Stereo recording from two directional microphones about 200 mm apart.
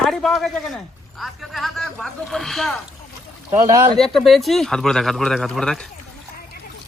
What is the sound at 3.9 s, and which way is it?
Speech, centre (ahead or behind).